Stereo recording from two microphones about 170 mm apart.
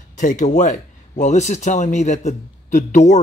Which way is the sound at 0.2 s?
50° left (ahead or behind).